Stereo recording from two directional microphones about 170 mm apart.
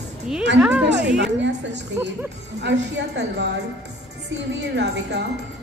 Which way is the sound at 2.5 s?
90° right.